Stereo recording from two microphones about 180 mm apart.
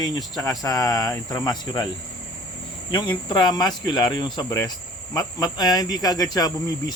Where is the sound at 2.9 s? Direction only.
25° left (ahead or behind).